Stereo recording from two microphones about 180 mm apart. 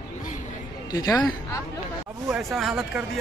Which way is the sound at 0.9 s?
20° left (ahead or behind).